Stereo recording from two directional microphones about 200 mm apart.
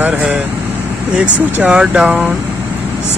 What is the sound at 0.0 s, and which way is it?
Speech, 5° right (ahead or behind).